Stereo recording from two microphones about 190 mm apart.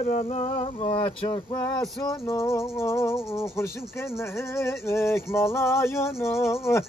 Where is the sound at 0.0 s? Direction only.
40° left (ahead or behind).